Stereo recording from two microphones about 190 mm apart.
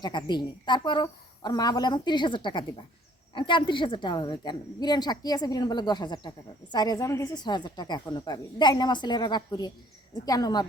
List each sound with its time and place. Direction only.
0.0 s a woman's voice: 25° left (ahead or behind)